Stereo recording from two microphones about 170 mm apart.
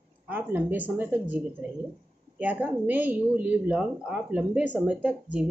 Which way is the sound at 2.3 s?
10° right (ahead or behind).